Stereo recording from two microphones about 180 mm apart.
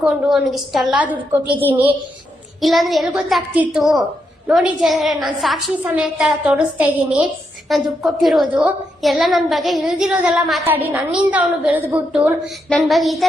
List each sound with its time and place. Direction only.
0.0 s a woman's voice: centre (ahead or behind)